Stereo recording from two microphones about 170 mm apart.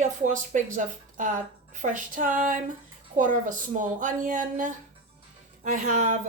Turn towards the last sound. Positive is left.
turn(degrees=-50)  # may be behind; listen again after turning